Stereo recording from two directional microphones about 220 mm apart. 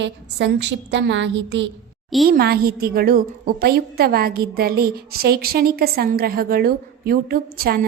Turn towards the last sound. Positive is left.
turn(degrees=-45)  # may be behind; listen again after turning